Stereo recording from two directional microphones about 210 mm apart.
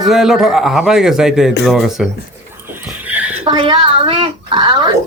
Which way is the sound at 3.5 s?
25° right (ahead or behind).